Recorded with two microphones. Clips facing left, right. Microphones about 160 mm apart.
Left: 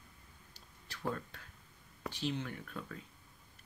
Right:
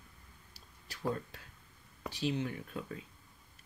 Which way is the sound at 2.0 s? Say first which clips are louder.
Right 3 dB; 10° right (ahead or behind).